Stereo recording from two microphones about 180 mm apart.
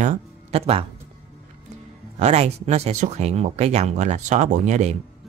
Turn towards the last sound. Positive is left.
turn(degrees=-40)  # may be behind; listen again after turning